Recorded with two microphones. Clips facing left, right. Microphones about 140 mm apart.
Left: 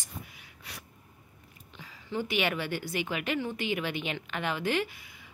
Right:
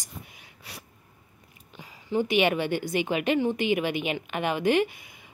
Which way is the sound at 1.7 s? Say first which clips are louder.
Right 7 dB; 15° right (ahead or behind).